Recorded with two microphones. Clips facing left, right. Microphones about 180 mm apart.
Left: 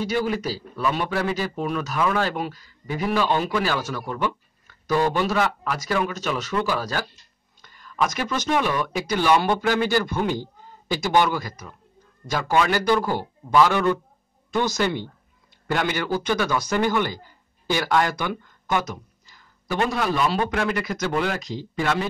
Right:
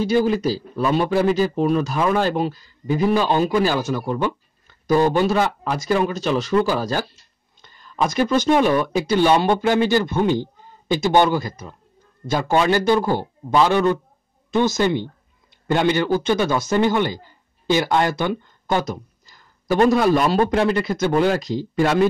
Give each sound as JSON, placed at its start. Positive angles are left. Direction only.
{"t": 0.0, "sound": "a man's voice", "side_deg": -30}